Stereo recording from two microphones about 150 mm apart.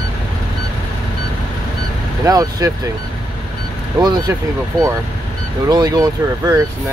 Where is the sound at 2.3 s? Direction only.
25° right (ahead or behind).